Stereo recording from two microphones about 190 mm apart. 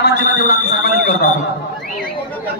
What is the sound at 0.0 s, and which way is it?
Speech, 55° left (ahead or behind).